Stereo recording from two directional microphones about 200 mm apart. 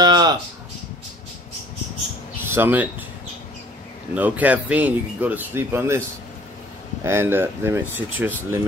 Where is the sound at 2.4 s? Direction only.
10° right (ahead or behind).